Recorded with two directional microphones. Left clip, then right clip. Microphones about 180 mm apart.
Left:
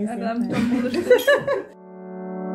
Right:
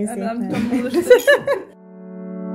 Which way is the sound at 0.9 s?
70° right (ahead or behind).